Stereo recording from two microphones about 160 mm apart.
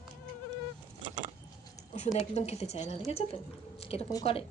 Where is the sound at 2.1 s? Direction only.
40° left (ahead or behind).